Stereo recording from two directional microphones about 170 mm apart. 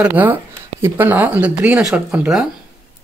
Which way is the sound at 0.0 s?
10° right (ahead or behind).